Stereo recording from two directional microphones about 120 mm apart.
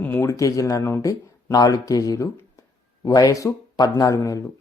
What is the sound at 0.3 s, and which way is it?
Speech, 25° left (ahead or behind).